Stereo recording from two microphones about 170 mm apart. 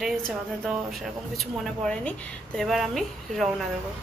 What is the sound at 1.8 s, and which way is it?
A woman's voice, 5° left (ahead or behind).